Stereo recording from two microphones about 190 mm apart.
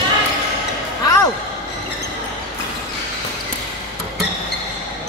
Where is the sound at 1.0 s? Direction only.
20° left (ahead or behind).